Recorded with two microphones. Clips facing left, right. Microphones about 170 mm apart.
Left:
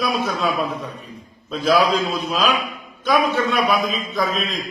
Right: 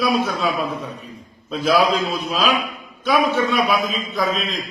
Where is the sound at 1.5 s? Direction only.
5° right (ahead or behind).